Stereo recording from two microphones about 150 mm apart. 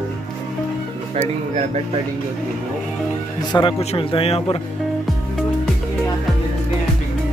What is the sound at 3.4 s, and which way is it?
Speech, 30° left (ahead or behind).